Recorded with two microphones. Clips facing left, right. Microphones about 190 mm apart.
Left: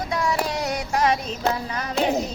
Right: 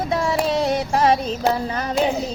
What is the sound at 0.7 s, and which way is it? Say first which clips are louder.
Child singing: right 1 dB; 30° right (ahead or behind).